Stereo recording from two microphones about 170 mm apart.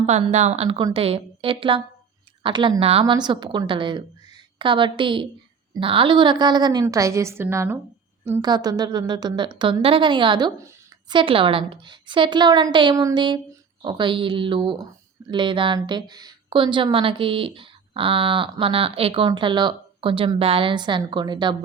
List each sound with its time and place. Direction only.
0.0 s a woman's voice: 40° right (ahead or behind)